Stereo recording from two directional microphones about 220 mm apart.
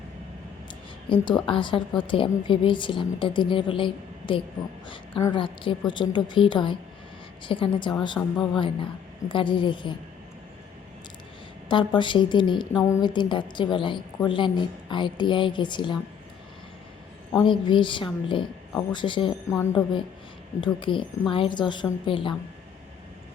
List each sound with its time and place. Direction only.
0.7 s a woman's voice: 20° left (ahead or behind)
8.2 s speech: 10° left (ahead or behind)
8.5 s a woman's voice: 20° left (ahead or behind)
11.7 s a woman's voice: 20° left (ahead or behind)
17.4 s a woman's voice: 20° left (ahead or behind)